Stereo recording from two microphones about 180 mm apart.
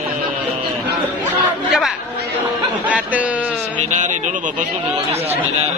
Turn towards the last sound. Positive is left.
turn(degrees=-45)  # may be behind; listen again after turning